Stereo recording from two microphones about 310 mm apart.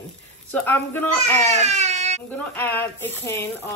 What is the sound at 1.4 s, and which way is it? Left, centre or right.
Baby cry, right.